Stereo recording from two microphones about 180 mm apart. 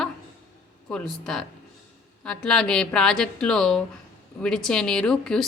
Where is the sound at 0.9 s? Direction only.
5° left (ahead or behind).